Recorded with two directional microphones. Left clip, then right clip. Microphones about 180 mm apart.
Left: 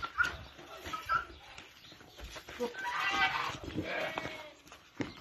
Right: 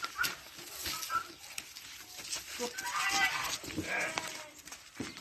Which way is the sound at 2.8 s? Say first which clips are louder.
Even; 50° right (ahead or behind).